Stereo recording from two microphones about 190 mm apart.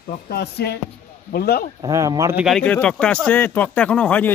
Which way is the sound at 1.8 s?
15° right (ahead or behind).